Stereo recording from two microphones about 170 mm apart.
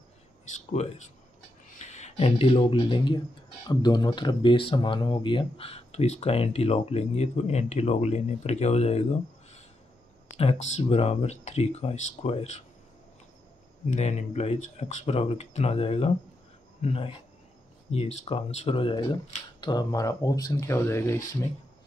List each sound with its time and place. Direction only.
0.5 s speech: 45° left (ahead or behind)
10.3 s speech: 35° left (ahead or behind)
13.8 s speech: 40° left (ahead or behind); by 21.4 s 15° left (ahead or behind)